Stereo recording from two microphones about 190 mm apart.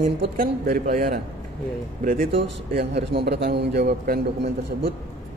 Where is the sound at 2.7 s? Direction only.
60° right (ahead or behind).